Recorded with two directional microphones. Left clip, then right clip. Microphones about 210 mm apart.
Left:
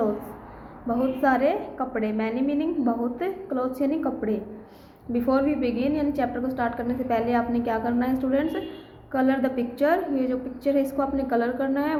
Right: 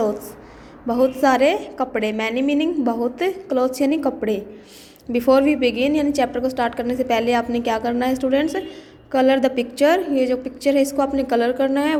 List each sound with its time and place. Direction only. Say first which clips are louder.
0.9 s a woman's voice: right 6 dB; 30° right (ahead or behind)